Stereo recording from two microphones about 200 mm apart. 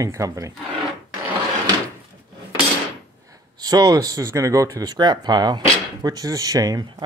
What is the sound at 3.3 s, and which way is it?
Speech, 20° right (ahead or behind).